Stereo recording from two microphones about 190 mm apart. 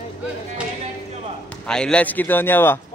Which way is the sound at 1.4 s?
5° left (ahead or behind).